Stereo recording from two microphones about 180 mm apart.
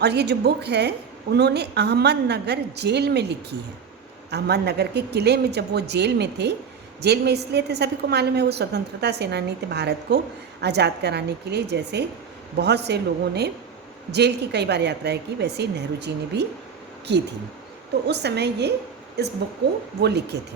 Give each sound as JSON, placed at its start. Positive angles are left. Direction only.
{"t": 0.0, "sound": "a woman's voice", "side_deg": -65}